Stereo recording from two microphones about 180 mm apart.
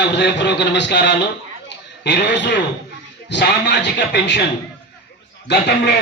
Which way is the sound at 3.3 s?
70° left (ahead or behind).